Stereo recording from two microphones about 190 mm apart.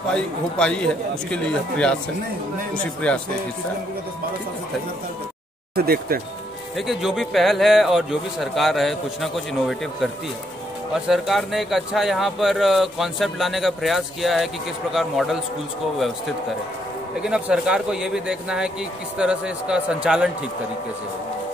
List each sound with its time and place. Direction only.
0.1 s speech: 5° left (ahead or behind)
3.0 s speech: 5° left (ahead or behind)
5.8 s speech: 55° right (ahead or behind)
6.9 s speech: centre (ahead or behind)
11.1 s speech: centre (ahead or behind)
17.2 s speech: 5° right (ahead or behind)